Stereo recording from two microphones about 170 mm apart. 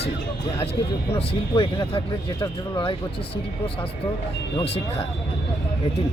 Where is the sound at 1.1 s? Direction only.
35° left (ahead or behind).